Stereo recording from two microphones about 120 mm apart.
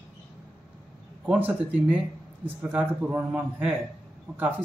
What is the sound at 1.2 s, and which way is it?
A man's voice, 15° right (ahead or behind).